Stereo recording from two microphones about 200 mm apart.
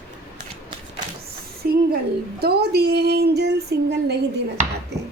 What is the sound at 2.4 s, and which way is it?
Female singing, 55° right (ahead or behind).